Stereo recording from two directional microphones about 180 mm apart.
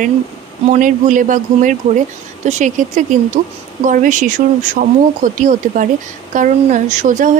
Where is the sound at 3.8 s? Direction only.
45° right (ahead or behind).